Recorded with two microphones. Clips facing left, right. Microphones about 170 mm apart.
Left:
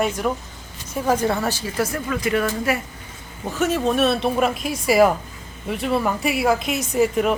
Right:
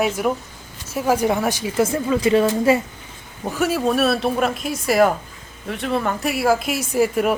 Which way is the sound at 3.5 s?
5° right (ahead or behind).